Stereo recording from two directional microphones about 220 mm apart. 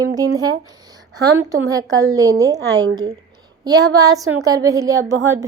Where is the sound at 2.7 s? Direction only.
20° right (ahead or behind).